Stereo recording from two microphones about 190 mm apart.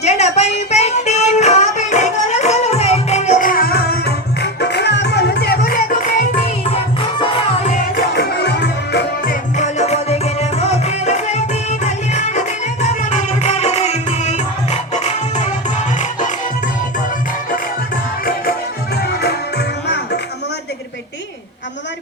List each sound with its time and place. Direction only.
0.0 s music: 35° left (ahead or behind)
6.7 s music: 30° left (ahead or behind)
7.9 s music: 55° left (ahead or behind)
9.6 s music: 35° left (ahead or behind)